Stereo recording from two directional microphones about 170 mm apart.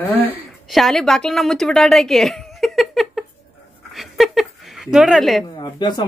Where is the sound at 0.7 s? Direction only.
Centre (ahead or behind).